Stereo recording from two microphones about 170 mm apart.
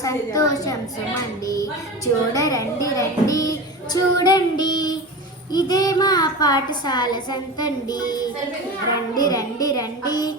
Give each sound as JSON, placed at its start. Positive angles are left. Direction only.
{"t": 0.0, "sound": "a child's voice", "side_deg": 20}
{"t": 2.3, "sound": "a child's voice", "side_deg": 20}